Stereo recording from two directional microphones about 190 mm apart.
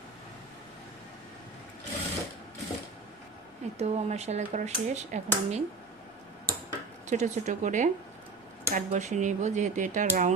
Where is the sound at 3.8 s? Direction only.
35° right (ahead or behind).